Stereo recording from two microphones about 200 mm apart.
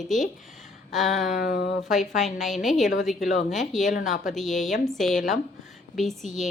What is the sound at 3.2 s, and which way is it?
Speech, 40° left (ahead or behind).